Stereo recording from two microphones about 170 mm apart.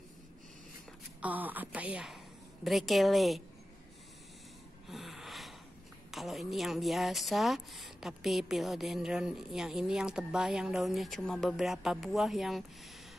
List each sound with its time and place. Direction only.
1.2 s a woman's voice: 10° right (ahead or behind)
4.8 s snort: centre (ahead or behind)
6.1 s speech: centre (ahead or behind)